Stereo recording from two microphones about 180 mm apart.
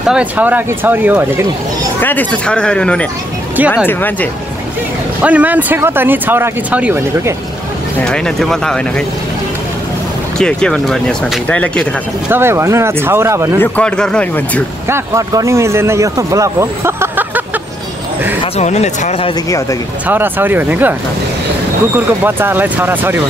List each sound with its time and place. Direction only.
0.0 s speech: 5° right (ahead or behind)
2.0 s speech: 10° left (ahead or behind)
5.2 s speech: 10° right (ahead or behind)
8.0 s speech: 5° left (ahead or behind)
10.3 s speech: 5° left (ahead or behind)
12.3 s speech: 15° right (ahead or behind)
13.6 s speech: 5° left (ahead or behind)
14.9 s speech: 15° right (ahead or behind)
18.4 s speech: 40° left (ahead or behind)
20.1 s speech: 10° right (ahead or behind)
21.9 s speech: 10° right (ahead or behind)